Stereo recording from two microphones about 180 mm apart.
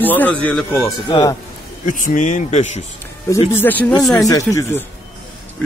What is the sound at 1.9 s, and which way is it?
Speech, 45° left (ahead or behind).